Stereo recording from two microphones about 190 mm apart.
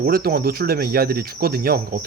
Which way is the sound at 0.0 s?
55° right (ahead or behind).